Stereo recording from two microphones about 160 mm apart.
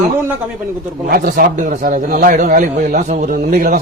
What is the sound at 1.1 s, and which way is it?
A man's voice, 65° right (ahead or behind).